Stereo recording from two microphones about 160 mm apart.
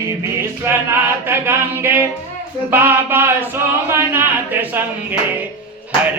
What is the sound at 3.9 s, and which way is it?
Speech, 15° right (ahead or behind).